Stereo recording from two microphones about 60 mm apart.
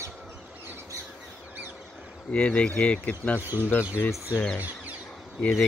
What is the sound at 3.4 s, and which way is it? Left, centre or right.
Speech, right.